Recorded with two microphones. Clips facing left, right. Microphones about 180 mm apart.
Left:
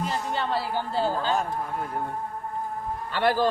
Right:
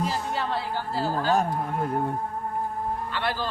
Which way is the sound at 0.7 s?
20° left (ahead or behind).